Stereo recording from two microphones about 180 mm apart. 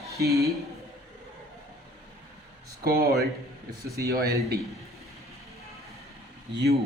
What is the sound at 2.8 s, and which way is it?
A man's voice, 60° right (ahead or behind).